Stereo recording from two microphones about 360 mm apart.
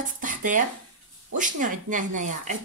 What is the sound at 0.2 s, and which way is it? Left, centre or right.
Dishes, right.